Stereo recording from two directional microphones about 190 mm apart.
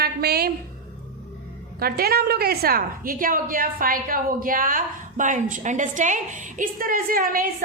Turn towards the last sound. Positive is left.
turn(degrees=-50)  # may be behind; listen again after turning